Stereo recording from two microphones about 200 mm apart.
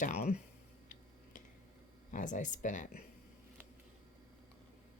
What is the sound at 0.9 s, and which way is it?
Tick-tock, 40° left (ahead or behind).